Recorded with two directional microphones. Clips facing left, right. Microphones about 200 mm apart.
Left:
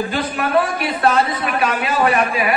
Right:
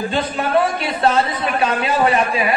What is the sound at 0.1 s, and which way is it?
A man's voice, 25° right (ahead or behind).